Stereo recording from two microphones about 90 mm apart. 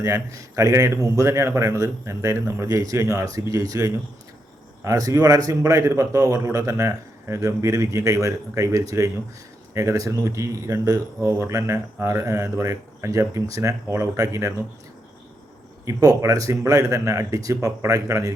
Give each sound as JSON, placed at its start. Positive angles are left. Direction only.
{"t": 0.0, "sound": "a man's voice", "side_deg": -35}
{"t": 15.9, "sound": "a man's voice", "side_deg": -40}